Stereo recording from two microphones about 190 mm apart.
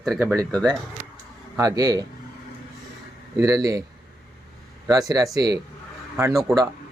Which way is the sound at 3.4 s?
20° right (ahead or behind).